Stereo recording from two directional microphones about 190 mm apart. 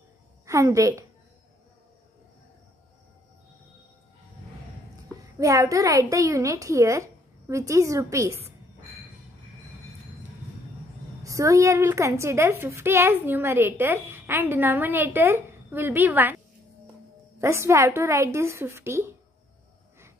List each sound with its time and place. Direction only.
0.5 s a woman's voice: 15° right (ahead or behind)
5.2 s a woman's voice: 15° right (ahead or behind)
11.2 s a woman's voice: 15° right (ahead or behind)
17.4 s a woman's voice: 15° right (ahead or behind)